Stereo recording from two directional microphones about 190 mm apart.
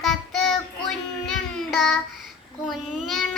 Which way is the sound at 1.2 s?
Centre (ahead or behind).